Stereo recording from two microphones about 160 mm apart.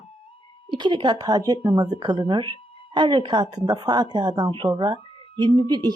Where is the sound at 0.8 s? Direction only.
30° right (ahead or behind).